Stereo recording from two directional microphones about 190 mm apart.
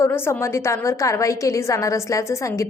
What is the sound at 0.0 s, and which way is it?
A woman's voice, 15° left (ahead or behind).